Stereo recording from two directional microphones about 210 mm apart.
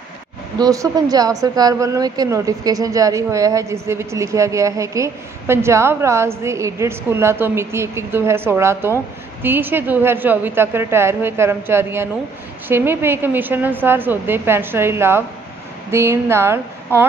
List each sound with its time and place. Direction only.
0.6 s a woman's voice: 15° right (ahead or behind)